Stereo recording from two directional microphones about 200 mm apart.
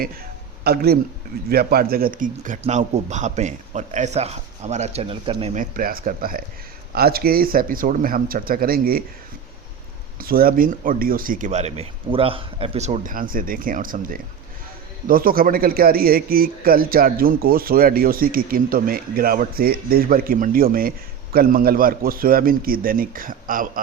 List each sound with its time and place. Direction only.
0.6 s a man's voice: 50° right (ahead or behind); by 5.6 s 30° right (ahead or behind)
5.7 s speech: 45° right (ahead or behind)
10.2 s speech: 45° right (ahead or behind)